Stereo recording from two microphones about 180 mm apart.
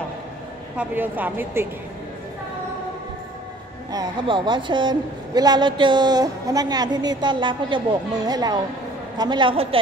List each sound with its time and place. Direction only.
0.7 s speech: 10° right (ahead or behind)
3.9 s a woman's voice: 25° right (ahead or behind)